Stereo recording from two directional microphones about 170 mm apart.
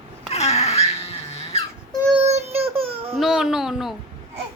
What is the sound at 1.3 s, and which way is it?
Baby cry, 35° left (ahead or behind).